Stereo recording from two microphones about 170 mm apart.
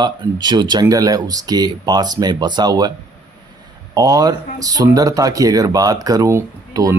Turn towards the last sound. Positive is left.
turn(degrees=-15)  # may be behind; listen again after turning